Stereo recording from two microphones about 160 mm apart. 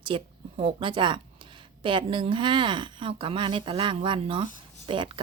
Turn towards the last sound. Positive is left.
turn(degrees=-30)  # may be behind; listen again after turning